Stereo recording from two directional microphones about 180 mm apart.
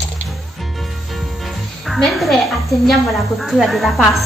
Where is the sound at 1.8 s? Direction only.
Centre (ahead or behind).